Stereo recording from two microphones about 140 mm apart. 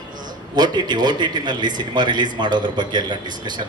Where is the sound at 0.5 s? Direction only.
30° right (ahead or behind).